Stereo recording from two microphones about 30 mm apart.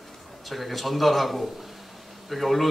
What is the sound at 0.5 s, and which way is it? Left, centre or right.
Speech, centre.